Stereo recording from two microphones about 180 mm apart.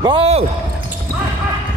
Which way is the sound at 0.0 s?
30° right (ahead or behind).